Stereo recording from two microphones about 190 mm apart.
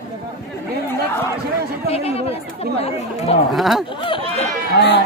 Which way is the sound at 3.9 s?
25° left (ahead or behind).